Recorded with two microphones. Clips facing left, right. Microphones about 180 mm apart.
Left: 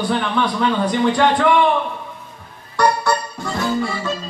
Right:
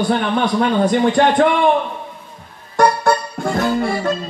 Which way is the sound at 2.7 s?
50° right (ahead or behind).